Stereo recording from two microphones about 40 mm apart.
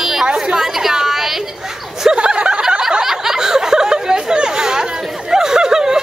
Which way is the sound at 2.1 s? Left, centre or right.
Right.